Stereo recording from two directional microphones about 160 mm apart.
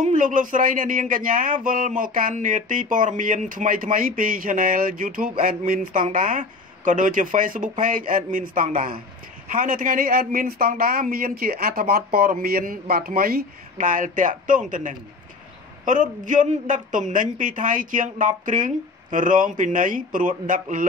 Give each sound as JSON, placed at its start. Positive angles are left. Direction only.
{"t": 0.0, "sound": "a man's voice", "side_deg": -55}